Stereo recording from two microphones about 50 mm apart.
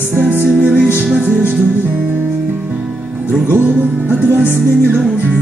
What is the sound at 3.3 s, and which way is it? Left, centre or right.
Music, right.